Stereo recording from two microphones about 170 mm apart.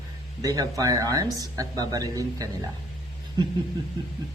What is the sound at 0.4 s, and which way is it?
Speech, 20° right (ahead or behind).